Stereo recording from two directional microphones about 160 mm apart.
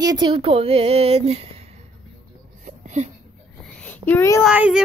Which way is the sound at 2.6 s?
50° right (ahead or behind).